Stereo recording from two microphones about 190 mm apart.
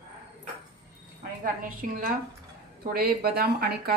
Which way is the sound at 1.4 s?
45° right (ahead or behind).